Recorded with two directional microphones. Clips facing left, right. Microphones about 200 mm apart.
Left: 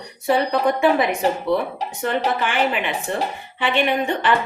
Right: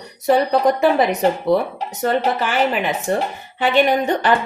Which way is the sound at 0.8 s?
35° right (ahead or behind).